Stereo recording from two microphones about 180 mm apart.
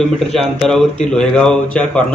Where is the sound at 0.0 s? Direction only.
Centre (ahead or behind).